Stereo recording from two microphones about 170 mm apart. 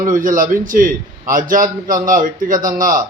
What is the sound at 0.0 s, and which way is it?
A man's voice, 50° right (ahead or behind).